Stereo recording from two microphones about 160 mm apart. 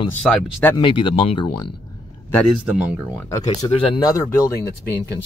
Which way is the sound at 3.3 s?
25° left (ahead or behind).